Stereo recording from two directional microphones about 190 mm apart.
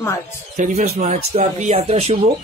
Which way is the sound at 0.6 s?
35° right (ahead or behind).